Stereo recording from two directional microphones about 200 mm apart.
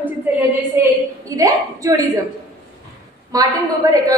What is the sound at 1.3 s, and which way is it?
Speech, 15° right (ahead or behind).